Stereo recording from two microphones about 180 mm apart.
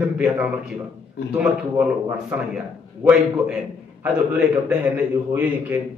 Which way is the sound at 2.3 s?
5° right (ahead or behind).